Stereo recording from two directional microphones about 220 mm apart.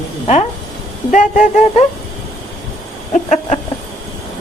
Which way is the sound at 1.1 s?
35° left (ahead or behind).